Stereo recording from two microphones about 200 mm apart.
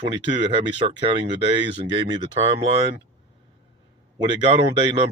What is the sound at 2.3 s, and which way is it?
Speech, 30° right (ahead or behind).